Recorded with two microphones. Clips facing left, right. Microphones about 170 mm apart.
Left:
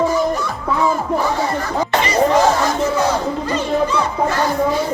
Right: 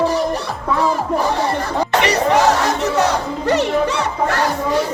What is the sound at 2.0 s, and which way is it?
Crowd, 70° right (ahead or behind).